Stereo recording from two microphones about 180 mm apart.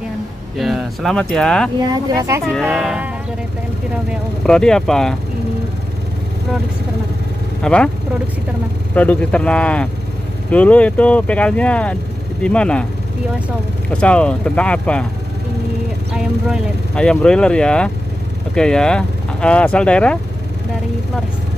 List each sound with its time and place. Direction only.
0.6 s speech: centre (ahead or behind)
2.0 s speech: 20° right (ahead or behind)
2.6 s speech: centre (ahead or behind)
4.5 s speech: 5° left (ahead or behind)
7.6 s speech: 5° left (ahead or behind)
8.9 s speech: 10° left (ahead or behind)
13.8 s speech: 5° left (ahead or behind)
16.1 s speech: centre (ahead or behind)